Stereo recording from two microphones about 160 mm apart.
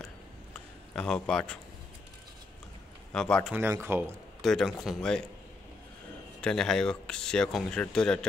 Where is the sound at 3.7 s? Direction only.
15° right (ahead or behind).